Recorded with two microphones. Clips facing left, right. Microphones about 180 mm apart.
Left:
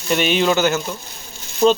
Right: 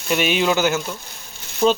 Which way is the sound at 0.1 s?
5° right (ahead or behind).